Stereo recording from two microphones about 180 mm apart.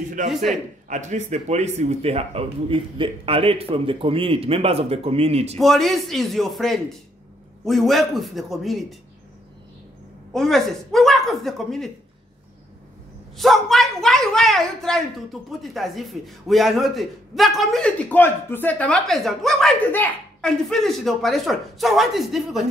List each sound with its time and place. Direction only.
0.3 s a woman's voice: centre (ahead or behind)
0.8 s speech: 40° right (ahead or behind)
5.6 s a woman's voice: centre (ahead or behind)
10.3 s a woman's voice: centre (ahead or behind)
13.4 s a woman's voice: centre (ahead or behind)